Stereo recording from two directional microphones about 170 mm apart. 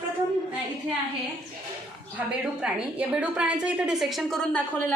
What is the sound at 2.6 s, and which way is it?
A woman's voice, 5° right (ahead or behind).